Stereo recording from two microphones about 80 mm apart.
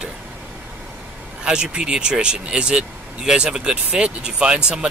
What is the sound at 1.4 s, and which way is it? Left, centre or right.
Speech, centre.